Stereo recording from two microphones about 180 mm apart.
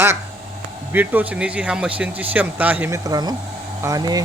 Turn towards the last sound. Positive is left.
turn(degrees=-20)  # may be behind; listen again after turning